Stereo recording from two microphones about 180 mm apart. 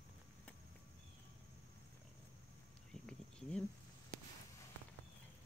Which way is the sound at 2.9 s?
5° left (ahead or behind).